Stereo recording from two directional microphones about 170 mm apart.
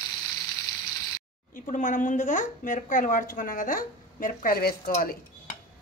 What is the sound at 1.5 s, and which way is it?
A woman's voice, 50° left (ahead or behind).